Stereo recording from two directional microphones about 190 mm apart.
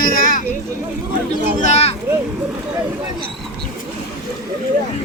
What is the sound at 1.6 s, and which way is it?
Speech, 35° left (ahead or behind).